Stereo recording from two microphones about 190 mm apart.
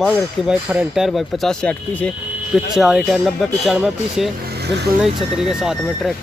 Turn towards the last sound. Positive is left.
turn(degrees=-5)  # may be behind; listen again after turning